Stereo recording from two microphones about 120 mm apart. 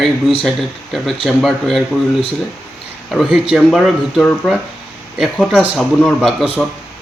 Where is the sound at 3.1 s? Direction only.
5° right (ahead or behind).